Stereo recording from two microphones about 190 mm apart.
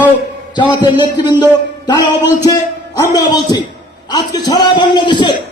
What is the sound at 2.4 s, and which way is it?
A man's voice, 20° left (ahead or behind).